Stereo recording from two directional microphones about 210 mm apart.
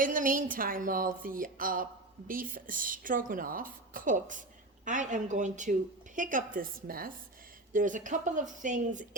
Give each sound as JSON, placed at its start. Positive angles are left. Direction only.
{"t": 0.0, "sound": "a woman's voice", "side_deg": -40}